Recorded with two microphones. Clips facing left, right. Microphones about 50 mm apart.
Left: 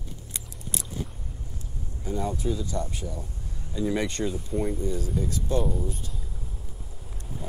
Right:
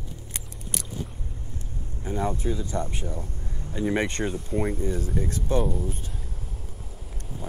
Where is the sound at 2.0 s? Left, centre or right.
Right.